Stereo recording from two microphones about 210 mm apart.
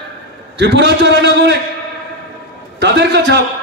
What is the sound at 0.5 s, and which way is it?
A man's voice, 55° right (ahead or behind).